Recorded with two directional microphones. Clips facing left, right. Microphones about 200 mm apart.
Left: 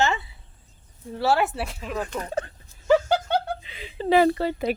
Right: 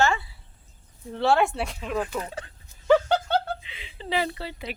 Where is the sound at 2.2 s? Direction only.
45° left (ahead or behind).